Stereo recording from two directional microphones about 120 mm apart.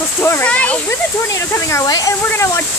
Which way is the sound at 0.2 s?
20° left (ahead or behind).